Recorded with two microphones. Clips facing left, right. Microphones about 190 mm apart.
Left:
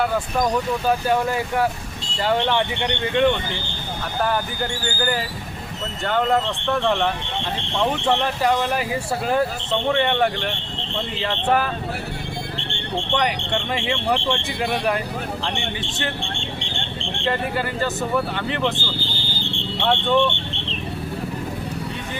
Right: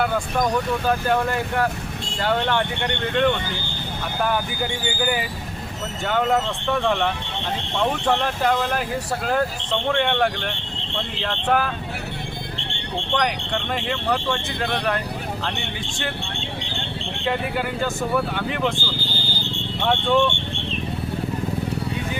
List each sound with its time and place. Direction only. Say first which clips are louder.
0.0 s speech: left 1 dB; 5° left (ahead or behind)
13.1 s speech: even; centre (ahead or behind)
16.6 s a sound: even; 5° right (ahead or behind)
18.3 s speech: even; 5° right (ahead or behind)
19.8 s speech: even; 5° right (ahead or behind)